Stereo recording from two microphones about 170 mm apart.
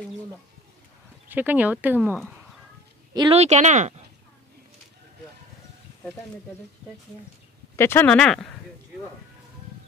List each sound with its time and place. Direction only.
1.3 s speech: 10° right (ahead or behind)
3.2 s speech: 35° right (ahead or behind)
7.7 s speech: 15° left (ahead or behind)